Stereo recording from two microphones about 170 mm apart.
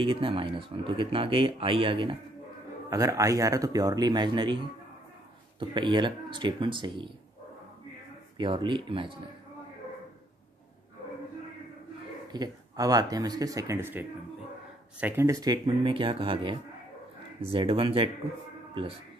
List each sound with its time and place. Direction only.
0.0 s speech: 30° right (ahead or behind)
2.9 s speech: 20° right (ahead or behind)
5.6 s speech: 25° right (ahead or behind)
8.4 s speech: 30° right (ahead or behind)
12.3 s speech: 25° right (ahead or behind)